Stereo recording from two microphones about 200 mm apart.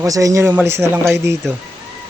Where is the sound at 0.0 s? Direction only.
15° right (ahead or behind).